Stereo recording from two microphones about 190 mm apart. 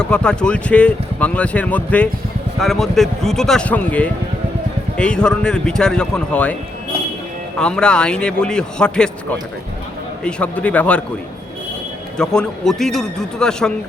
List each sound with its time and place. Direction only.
0.0 s a man's voice: 5° left (ahead or behind)
7.6 s a man's voice: 5° left (ahead or behind)
10.2 s speech: 5° left (ahead or behind)
12.1 s a man's voice: 5° left (ahead or behind)